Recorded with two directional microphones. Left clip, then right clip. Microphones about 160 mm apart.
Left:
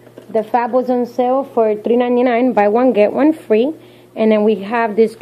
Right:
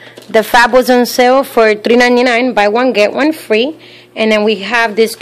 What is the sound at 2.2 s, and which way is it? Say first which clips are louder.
A woman's voice: right 3 dB; 10° right (ahead or behind).